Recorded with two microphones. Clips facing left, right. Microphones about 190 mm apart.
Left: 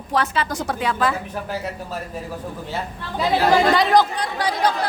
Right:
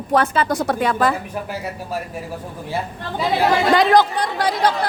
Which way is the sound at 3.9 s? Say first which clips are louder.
Right 2 dB; 55° right (ahead or behind).